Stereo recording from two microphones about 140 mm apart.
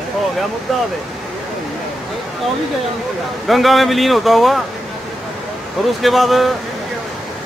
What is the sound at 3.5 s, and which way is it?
Speech, centre (ahead or behind).